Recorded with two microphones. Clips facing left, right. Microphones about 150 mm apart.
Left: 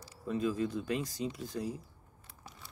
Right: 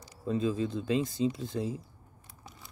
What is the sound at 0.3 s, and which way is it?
Speech, 25° right (ahead or behind).